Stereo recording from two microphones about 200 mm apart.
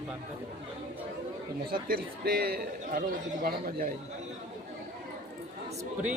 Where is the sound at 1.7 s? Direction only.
50° right (ahead or behind).